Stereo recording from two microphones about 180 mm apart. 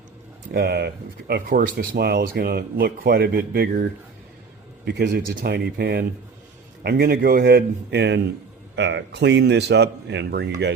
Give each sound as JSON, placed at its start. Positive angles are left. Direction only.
{"t": 0.5, "sound": "speech", "side_deg": -60}
{"t": 4.9, "sound": "speech", "side_deg": -60}